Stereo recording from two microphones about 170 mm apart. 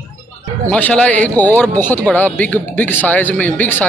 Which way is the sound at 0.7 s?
10° left (ahead or behind).